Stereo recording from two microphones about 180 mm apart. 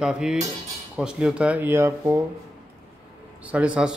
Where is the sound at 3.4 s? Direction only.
5° right (ahead or behind).